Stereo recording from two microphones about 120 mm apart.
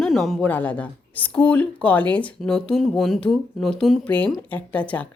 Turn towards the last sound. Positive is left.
turn(degrees=10)  # may be behind; listen again after turning